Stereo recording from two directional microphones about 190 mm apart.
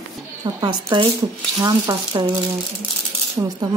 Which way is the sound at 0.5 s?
25° right (ahead or behind).